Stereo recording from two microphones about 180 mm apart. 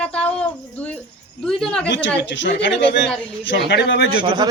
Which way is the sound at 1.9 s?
85° left.